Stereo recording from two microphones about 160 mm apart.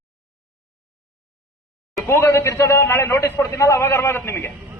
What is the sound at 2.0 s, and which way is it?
A man's voice, 15° left (ahead or behind).